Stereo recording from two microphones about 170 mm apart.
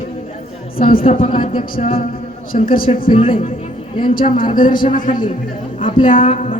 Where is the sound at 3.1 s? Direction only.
30° left (ahead or behind).